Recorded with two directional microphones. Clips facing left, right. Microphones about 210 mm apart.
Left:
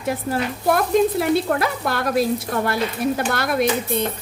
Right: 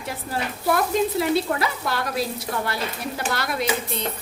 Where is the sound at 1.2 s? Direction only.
55° left (ahead or behind).